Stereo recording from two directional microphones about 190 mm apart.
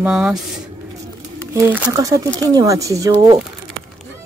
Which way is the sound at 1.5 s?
10° right (ahead or behind).